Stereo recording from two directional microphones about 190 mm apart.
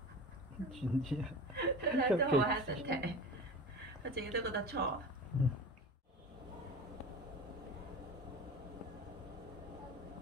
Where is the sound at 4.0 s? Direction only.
55° right (ahead or behind).